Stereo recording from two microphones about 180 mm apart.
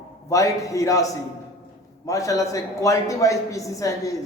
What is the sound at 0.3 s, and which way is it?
Speech, 20° left (ahead or behind).